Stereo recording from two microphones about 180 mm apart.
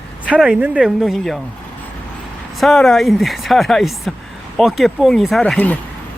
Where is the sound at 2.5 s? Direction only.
Centre (ahead or behind).